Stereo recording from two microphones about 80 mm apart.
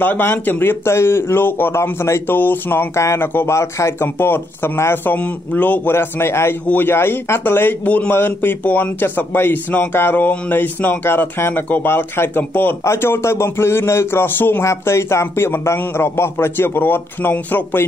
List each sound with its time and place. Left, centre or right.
0.0 s a man's voice: left
14.6 s a man's voice: left